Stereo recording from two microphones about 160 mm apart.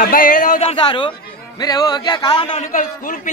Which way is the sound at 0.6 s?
35° left (ahead or behind).